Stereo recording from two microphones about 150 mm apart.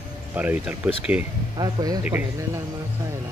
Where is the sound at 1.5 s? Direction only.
25° right (ahead or behind).